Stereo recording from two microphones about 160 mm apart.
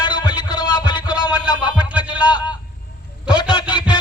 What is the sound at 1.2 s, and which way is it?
Music, 10° right (ahead or behind).